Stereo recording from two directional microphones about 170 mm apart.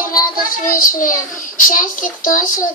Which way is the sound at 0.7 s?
50° left (ahead or behind).